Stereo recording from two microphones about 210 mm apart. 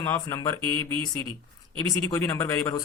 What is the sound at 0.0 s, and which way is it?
Speech, 10° left (ahead or behind).